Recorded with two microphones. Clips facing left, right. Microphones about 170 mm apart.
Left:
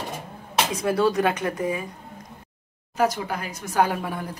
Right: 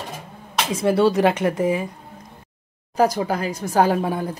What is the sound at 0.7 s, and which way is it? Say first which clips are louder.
A woman's voice: right 5 dB; 30° right (ahead or behind).